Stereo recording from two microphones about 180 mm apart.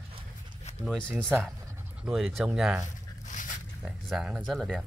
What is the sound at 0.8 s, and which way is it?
Speech, 5° left (ahead or behind).